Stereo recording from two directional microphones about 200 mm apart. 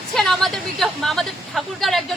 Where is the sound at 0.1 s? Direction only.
Centre (ahead or behind).